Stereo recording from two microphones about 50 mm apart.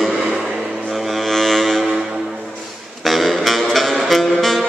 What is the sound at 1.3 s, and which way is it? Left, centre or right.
Foghorn, centre.